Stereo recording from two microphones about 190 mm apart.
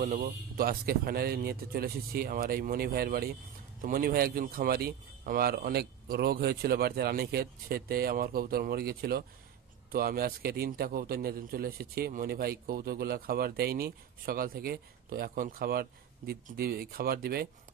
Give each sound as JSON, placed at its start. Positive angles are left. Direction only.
{"t": 0.0, "sound": "a man's voice", "side_deg": -50}